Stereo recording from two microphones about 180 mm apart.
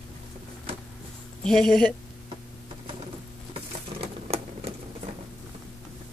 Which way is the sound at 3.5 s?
30° right (ahead or behind).